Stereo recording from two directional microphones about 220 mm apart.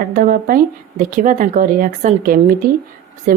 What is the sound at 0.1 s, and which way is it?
Speech, 40° right (ahead or behind).